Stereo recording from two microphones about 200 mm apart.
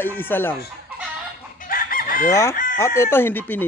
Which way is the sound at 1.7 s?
45° left (ahead or behind).